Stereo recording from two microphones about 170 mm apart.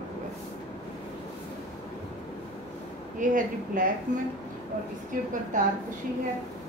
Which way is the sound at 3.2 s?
50° right (ahead or behind).